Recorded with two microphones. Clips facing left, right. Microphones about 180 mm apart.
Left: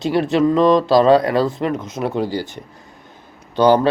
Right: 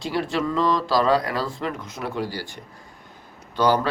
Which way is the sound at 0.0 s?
20° left (ahead or behind).